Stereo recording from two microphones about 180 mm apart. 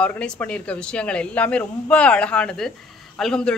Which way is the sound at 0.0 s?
10° left (ahead or behind).